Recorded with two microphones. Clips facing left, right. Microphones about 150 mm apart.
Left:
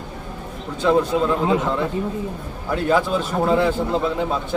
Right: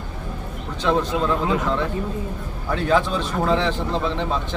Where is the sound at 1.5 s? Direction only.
25° left (ahead or behind).